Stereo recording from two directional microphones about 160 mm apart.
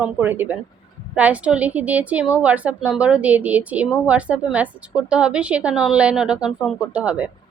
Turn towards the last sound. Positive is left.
turn(degrees=-5)  # may be behind; listen again after turning